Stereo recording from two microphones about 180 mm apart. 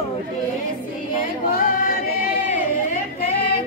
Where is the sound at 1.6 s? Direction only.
50° left (ahead or behind).